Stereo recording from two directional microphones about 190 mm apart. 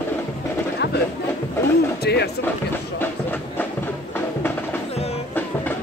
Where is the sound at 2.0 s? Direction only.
60° left (ahead or behind).